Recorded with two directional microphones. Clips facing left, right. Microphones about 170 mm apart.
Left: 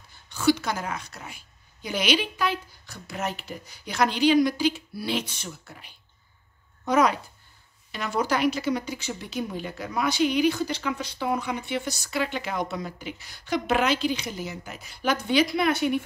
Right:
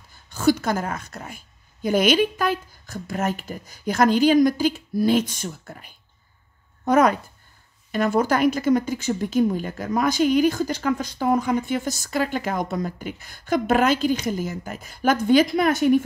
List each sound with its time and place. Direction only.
0.3 s speech: 45° right (ahead or behind)